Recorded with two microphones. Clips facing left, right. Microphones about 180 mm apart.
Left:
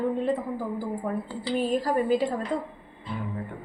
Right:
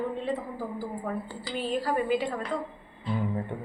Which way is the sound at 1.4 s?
40° left (ahead or behind).